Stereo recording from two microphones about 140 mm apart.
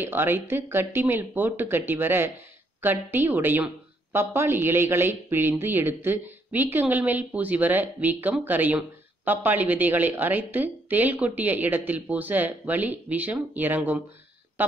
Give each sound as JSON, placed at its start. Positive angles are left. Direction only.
{"t": 0.0, "sound": "a woman's voice", "side_deg": -15}